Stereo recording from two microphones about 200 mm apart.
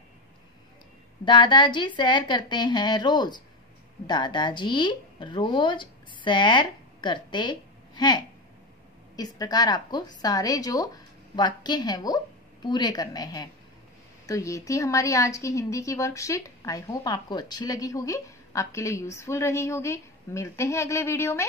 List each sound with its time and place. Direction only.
1.2 s a woman's voice: 25° left (ahead or behind)